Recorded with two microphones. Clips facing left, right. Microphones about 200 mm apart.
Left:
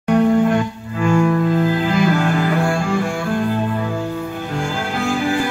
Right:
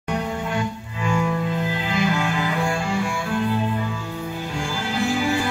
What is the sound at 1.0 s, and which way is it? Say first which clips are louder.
Music: left 7 dB; 60° left (ahead or behind).